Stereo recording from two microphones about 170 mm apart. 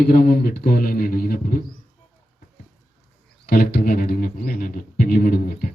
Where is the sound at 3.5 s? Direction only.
60° left (ahead or behind).